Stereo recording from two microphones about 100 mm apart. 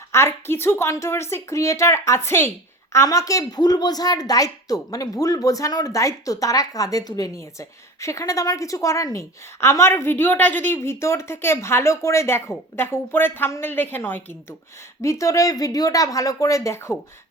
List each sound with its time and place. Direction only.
0.1 s a woman's voice: 25° left (ahead or behind)
15.0 s a woman's voice: 30° left (ahead or behind)